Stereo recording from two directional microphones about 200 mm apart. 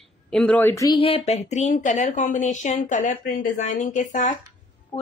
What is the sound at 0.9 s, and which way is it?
Speech, 30° left (ahead or behind).